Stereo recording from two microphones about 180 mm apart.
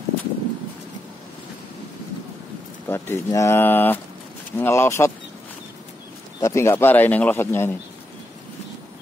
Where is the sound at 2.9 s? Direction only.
15° left (ahead or behind).